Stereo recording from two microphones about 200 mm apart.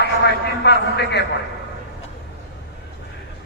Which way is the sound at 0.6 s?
55° left (ahead or behind).